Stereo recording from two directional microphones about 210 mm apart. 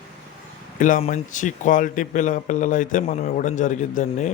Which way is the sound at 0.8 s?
40° left (ahead or behind).